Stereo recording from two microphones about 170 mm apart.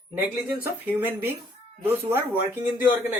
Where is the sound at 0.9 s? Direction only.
10° right (ahead or behind).